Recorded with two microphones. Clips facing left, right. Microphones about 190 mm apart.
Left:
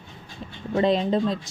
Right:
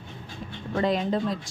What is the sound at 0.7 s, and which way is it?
Speech, 25° left (ahead or behind).